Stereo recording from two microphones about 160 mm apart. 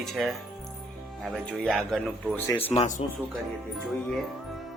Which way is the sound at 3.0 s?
40° left (ahead or behind).